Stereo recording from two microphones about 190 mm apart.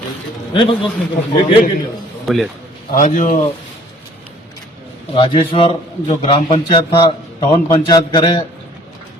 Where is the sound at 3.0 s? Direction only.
40° left (ahead or behind).